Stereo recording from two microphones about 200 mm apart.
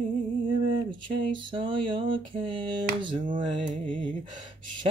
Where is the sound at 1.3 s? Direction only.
25° right (ahead or behind).